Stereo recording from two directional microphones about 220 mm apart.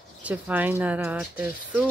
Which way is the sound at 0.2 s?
5° right (ahead or behind).